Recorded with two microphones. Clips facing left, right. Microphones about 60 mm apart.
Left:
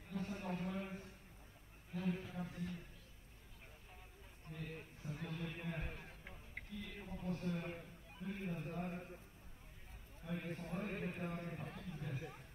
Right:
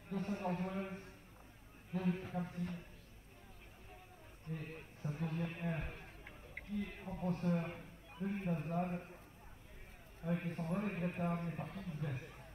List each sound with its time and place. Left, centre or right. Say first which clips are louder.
0.1 s a sound: right 4 dB; right
2.0 s a man's voice: right 4 dB; right
4.5 s a man's voice: right 3 dB; right
10.2 s a man's voice: right 6 dB; right